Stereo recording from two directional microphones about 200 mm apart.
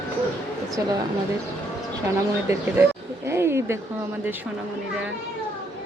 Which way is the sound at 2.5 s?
10° right (ahead or behind).